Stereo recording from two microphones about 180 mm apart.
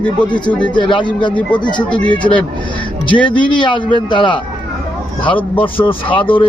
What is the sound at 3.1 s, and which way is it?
A man's voice, 25° left (ahead or behind).